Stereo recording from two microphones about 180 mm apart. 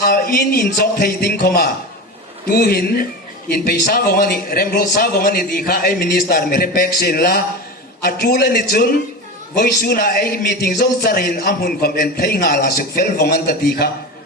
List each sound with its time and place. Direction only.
0.0 s a man's voice: 55° left (ahead or behind)